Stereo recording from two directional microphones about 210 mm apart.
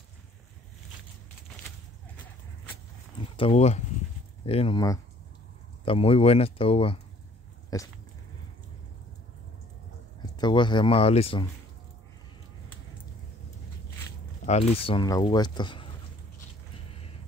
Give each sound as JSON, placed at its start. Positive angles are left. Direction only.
{"t": 3.3, "sound": "speech", "side_deg": 30}
{"t": 7.7, "sound": "dog", "side_deg": 15}
{"t": 10.2, "sound": "speech", "side_deg": 20}
{"t": 14.4, "sound": "speech", "side_deg": 30}